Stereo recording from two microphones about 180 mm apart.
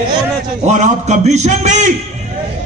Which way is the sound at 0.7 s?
40° right (ahead or behind).